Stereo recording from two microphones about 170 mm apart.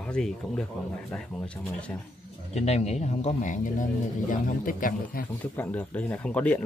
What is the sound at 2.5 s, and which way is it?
Speech, 40° left (ahead or behind).